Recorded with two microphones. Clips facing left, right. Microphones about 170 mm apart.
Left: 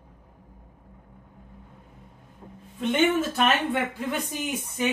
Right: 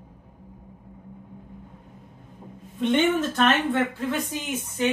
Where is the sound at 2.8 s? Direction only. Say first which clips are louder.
Right 1 dB; 5° left (ahead or behind).